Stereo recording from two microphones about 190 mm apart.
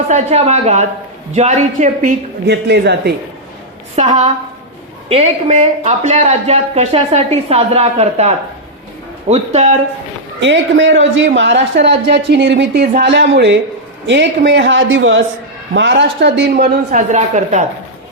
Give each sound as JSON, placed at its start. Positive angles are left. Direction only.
{"t": 0.1, "sound": "a man's voice", "side_deg": -35}
{"t": 2.5, "sound": "speech", "side_deg": -60}
{"t": 3.9, "sound": "a man's voice", "side_deg": -35}
{"t": 10.4, "sound": "a man's voice", "side_deg": -70}
{"t": 15.7, "sound": "a man's voice", "side_deg": -70}
{"t": 16.6, "sound": "a man's voice", "side_deg": -40}